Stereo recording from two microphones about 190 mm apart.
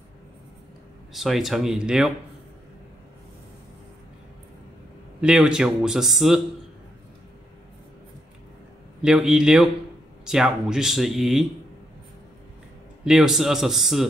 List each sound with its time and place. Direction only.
1.1 s speech: centre (ahead or behind)
5.2 s speech: 5° right (ahead or behind)
9.0 s speech: 5° right (ahead or behind)
13.0 s speech: 5° right (ahead or behind)